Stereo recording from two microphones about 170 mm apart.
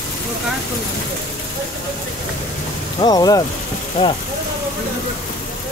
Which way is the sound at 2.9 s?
25° left (ahead or behind).